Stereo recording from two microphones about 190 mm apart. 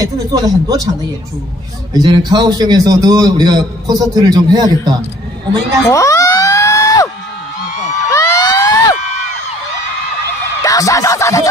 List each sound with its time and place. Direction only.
0.0 s a man's voice: 20° right (ahead or behind)
2.0 s a man's voice: 20° right (ahead or behind)
5.9 s a sound: 15° left (ahead or behind)
8.1 s vehicle: 15° left (ahead or behind)
10.6 s music: 15° left (ahead or behind)